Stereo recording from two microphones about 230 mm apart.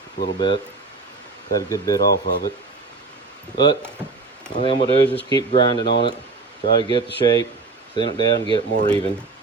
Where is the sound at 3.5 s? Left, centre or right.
Centre.